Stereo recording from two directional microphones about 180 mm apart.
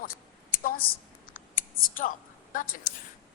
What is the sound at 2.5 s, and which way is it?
Speech, 45° left (ahead or behind).